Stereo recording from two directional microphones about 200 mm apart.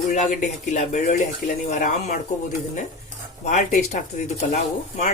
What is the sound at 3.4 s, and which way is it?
Speech, 40° left (ahead or behind).